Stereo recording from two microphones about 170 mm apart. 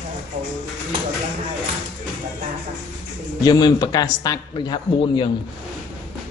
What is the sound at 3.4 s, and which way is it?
Speech, 25° left (ahead or behind).